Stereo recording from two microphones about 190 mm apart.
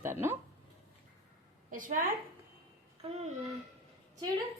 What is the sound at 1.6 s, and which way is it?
Speech, 45° right (ahead or behind).